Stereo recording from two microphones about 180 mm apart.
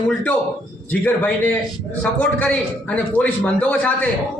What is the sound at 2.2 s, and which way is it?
A man's voice, 5° left (ahead or behind).